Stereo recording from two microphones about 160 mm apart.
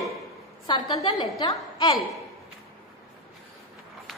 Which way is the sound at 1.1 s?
25° left (ahead or behind).